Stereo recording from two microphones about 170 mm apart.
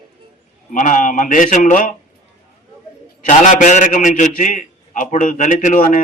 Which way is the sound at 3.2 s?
45° left (ahead or behind).